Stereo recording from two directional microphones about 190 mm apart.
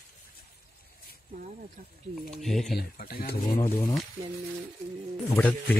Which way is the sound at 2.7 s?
50° left (ahead or behind).